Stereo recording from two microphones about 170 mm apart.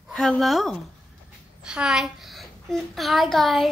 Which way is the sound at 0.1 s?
5° left (ahead or behind).